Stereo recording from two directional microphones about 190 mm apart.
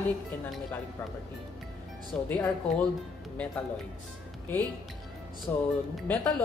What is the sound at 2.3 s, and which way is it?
Speech, 10° left (ahead or behind).